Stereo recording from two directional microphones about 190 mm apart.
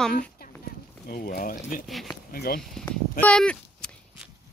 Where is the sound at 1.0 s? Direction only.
50° left (ahead or behind).